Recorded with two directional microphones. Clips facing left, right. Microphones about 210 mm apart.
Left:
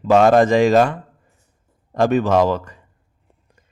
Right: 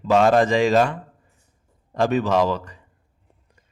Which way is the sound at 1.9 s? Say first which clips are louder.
Left 4 dB; 50° left (ahead or behind).